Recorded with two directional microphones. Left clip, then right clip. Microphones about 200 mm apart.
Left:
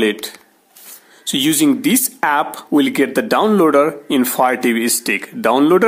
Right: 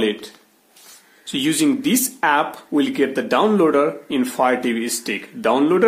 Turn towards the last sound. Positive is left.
turn(degrees=40)  # may be behind; listen again after turning